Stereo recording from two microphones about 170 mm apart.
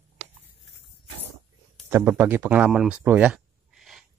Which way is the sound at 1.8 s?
10° right (ahead or behind).